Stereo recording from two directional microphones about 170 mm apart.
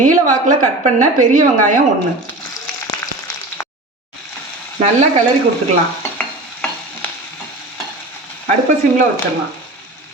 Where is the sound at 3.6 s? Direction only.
15° left (ahead or behind).